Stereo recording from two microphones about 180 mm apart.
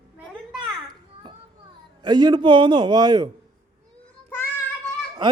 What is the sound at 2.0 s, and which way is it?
Speech, 20° right (ahead or behind).